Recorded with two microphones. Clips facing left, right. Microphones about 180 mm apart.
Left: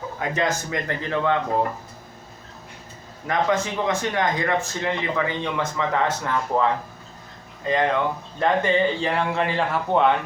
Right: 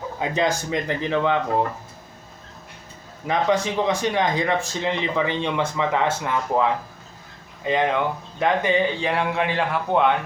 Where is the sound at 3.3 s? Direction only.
15° right (ahead or behind).